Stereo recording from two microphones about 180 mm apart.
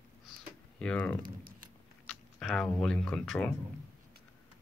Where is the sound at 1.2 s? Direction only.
50° right (ahead or behind).